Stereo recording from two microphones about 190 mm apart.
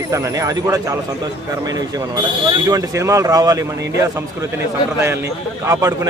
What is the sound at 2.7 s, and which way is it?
Speech, 15° right (ahead or behind).